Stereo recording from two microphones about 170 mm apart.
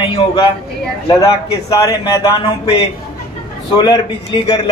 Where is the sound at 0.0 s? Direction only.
30° left (ahead or behind).